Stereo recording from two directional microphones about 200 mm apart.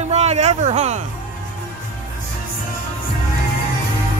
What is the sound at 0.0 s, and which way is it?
Music, 35° right (ahead or behind).